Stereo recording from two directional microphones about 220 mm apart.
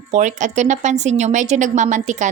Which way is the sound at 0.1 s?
35° right (ahead or behind).